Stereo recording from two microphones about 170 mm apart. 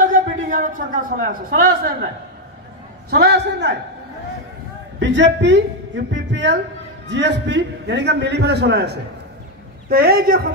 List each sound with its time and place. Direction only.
0.0 s a man's voice: 50° right (ahead or behind)
3.1 s a man's voice: 75° right (ahead or behind)
5.0 s a man's voice: 90° right
9.8 s a man's voice: 60° right (ahead or behind)